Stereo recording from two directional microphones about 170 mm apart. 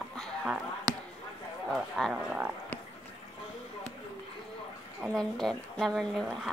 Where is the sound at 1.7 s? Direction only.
Centre (ahead or behind).